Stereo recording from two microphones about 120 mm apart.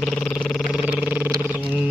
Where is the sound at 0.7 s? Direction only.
10° right (ahead or behind).